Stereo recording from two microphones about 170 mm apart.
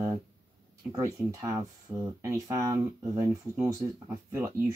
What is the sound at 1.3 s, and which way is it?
Speech, 20° right (ahead or behind).